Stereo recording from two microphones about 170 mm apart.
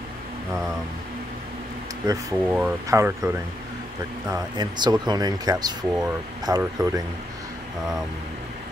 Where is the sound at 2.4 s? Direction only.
5° right (ahead or behind).